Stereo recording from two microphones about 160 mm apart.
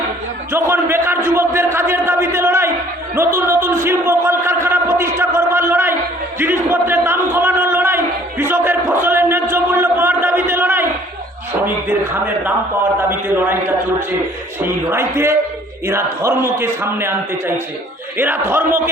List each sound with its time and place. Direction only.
0.5 s a man's voice: 15° right (ahead or behind)
3.2 s a sound: 15° right (ahead or behind)
13.1 s a man's voice: 15° right (ahead or behind)
18.2 s a man's voice: 15° right (ahead or behind)